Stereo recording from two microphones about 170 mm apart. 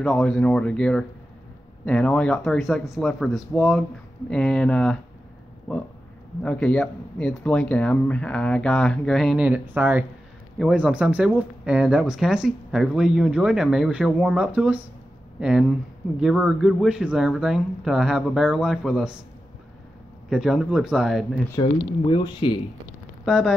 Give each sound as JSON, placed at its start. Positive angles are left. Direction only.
{"t": 0.0, "sound": "speech", "side_deg": 5}
{"t": 20.2, "sound": "speech", "side_deg": 0}
{"t": 21.5, "sound": "speech", "side_deg": 30}
{"t": 23.2, "sound": "speech", "side_deg": 0}